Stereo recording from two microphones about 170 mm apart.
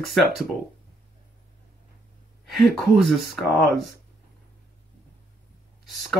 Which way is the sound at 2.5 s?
Centre (ahead or behind).